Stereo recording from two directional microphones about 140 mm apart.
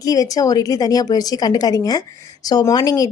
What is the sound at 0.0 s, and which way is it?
A woman's voice, 25° left (ahead or behind).